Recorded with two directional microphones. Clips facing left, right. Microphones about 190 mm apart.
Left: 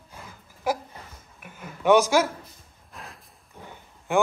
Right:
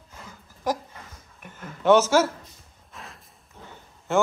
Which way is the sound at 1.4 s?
10° left (ahead or behind).